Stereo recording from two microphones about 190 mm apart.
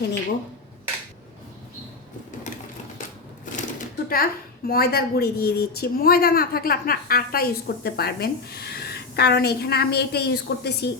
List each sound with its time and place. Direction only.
3.4 s speech: 45° left (ahead or behind); by 10.9 s 60° left (ahead or behind)